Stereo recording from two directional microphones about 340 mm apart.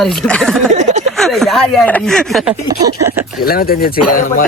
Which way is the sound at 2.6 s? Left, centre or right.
Centre.